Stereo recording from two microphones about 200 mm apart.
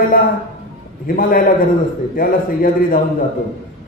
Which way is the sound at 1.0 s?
45° left (ahead or behind).